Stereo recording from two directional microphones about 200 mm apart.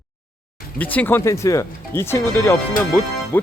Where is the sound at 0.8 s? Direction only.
10° left (ahead or behind).